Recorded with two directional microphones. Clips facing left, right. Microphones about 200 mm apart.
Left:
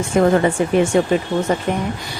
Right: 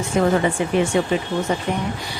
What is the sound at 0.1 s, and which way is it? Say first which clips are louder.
Speech: left 4 dB; 50° left (ahead or behind).